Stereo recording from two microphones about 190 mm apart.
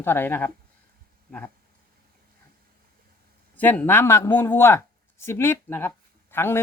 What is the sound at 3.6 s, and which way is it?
Speech, 10° left (ahead or behind).